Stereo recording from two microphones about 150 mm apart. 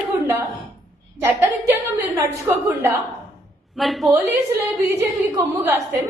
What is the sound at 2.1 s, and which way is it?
Speech, 20° right (ahead or behind).